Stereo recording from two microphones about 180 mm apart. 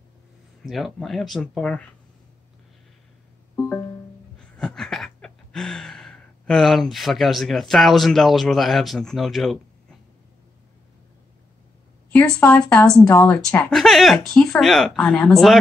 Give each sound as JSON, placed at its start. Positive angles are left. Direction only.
{"t": 0.7, "sound": "speech", "side_deg": 0}
{"t": 3.5, "sound": "music", "side_deg": 15}
{"t": 4.6, "sound": "a sound", "side_deg": 5}
{"t": 12.1, "sound": "speech", "side_deg": 5}